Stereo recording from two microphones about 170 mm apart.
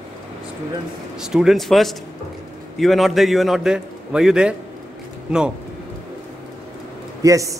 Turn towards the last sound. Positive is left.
turn(degrees=-20)  # may be behind; listen again after turning